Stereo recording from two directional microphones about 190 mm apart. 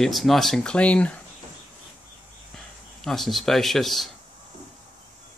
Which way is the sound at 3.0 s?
Centre (ahead or behind).